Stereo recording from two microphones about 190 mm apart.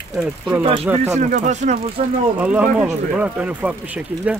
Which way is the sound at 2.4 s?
5° right (ahead or behind).